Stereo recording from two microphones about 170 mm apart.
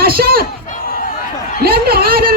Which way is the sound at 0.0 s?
65° right (ahead or behind).